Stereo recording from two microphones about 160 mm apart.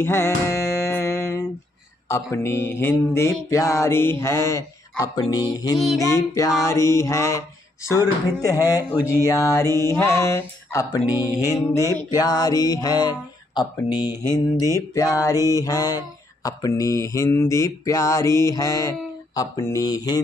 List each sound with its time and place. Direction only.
0.0 s music: 15° left (ahead or behind)
2.0 s mantra: 15° left (ahead or behind)
14.7 s mantra: 20° left (ahead or behind)